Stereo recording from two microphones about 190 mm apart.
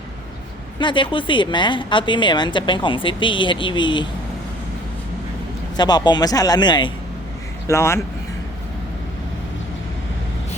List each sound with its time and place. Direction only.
0.8 s a woman's voice: 25° left (ahead or behind)
5.7 s a woman's voice: 20° left (ahead or behind)